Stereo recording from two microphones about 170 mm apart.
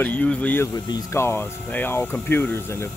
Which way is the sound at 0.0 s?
10° left (ahead or behind).